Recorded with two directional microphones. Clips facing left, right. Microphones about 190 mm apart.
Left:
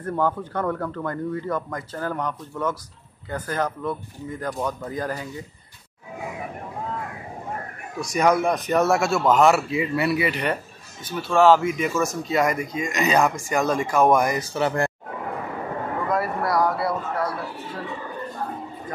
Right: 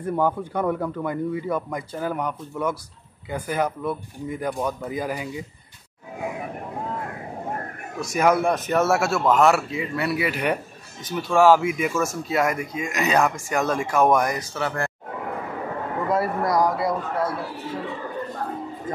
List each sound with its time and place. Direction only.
0.0 s speech: 10° right (ahead or behind)
8.0 s speech: 5° right (ahead or behind)
14.5 s speech: 20° left (ahead or behind)
16.4 s speech: 15° right (ahead or behind)